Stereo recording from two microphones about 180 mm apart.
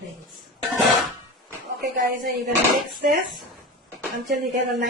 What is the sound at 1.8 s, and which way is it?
Speech, 55° right (ahead or behind).